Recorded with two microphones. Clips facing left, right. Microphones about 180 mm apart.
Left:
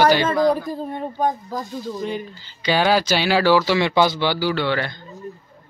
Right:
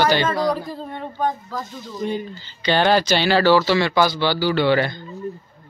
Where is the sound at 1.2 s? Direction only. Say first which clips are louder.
Even; 15° left (ahead or behind).